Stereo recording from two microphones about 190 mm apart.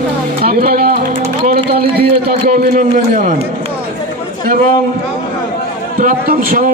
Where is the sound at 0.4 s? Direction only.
50° right (ahead or behind).